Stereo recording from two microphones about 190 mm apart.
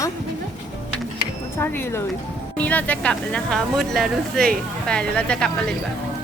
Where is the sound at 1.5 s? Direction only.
10° left (ahead or behind).